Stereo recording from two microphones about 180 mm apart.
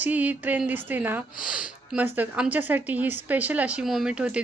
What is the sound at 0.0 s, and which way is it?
Speech, 10° right (ahead or behind).